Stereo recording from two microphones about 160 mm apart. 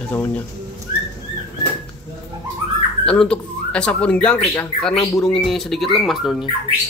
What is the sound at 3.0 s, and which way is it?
Speech, 5° left (ahead or behind).